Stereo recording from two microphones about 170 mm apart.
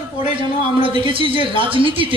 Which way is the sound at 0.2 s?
30° right (ahead or behind).